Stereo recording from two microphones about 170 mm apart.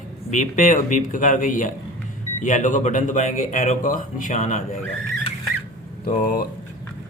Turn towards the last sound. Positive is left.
turn(degrees=60)  # may be behind; listen again after turning